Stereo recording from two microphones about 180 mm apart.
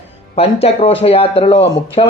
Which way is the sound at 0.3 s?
35° left (ahead or behind).